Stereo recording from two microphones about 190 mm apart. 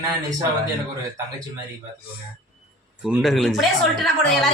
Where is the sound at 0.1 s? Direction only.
20° right (ahead or behind).